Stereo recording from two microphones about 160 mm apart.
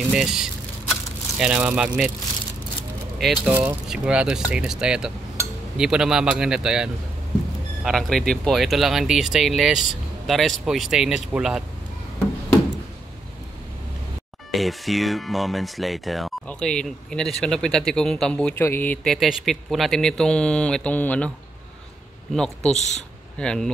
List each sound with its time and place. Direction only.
0.1 s speech: 5° right (ahead or behind)
3.2 s speech: centre (ahead or behind)
14.5 s speech: centre (ahead or behind)
19.1 s speech: centre (ahead or behind)
22.3 s speech: 5° left (ahead or behind)
22.8 s speech: 45° left (ahead or behind)
23.4 s speech: 5° left (ahead or behind)